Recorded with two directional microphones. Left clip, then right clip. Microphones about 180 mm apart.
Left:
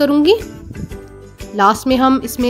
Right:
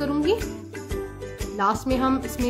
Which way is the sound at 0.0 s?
45° left (ahead or behind).